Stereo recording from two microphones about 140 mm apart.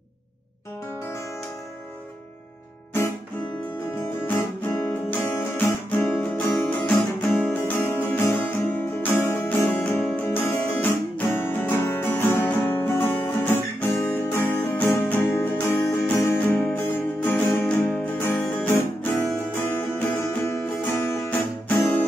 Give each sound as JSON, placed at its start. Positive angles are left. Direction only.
{"t": 4.3, "sound": "guitar", "side_deg": 15}
{"t": 19.5, "sound": "music", "side_deg": 15}